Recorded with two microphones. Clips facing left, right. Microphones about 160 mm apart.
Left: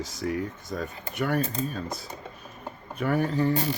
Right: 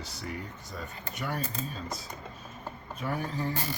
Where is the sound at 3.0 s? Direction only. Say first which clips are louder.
Left 9 dB; 65° left (ahead or behind).